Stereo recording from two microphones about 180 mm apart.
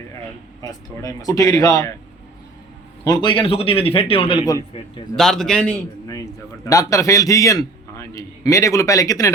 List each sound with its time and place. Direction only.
1.0 s a man's voice: 20° left (ahead or behind)
3.0 s a man's voice: 25° left (ahead or behind)
5.1 s a man's voice: centre (ahead or behind)
6.7 s a man's voice: 20° left (ahead or behind)